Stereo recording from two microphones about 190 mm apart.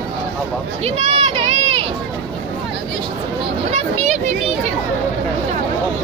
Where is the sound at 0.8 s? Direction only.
35° right (ahead or behind).